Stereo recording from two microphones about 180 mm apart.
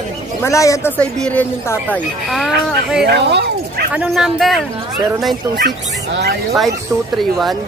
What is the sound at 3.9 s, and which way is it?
Speech, 5° right (ahead or behind).